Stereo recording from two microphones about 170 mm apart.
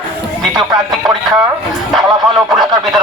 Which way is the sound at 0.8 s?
5° right (ahead or behind).